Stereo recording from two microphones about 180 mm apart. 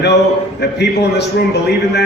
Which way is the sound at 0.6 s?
70° left (ahead or behind).